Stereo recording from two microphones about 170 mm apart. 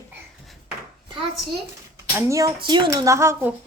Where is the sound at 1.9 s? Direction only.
20° right (ahead or behind).